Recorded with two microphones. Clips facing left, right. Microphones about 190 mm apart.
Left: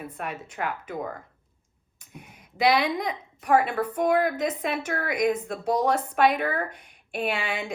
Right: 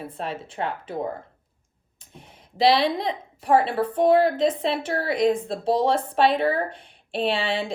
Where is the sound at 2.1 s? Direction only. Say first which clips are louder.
Left 1 dB; 10° left (ahead or behind).